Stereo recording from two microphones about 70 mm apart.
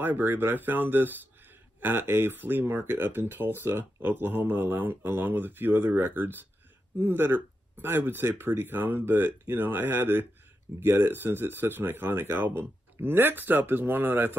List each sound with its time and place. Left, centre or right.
0.0 s speech: right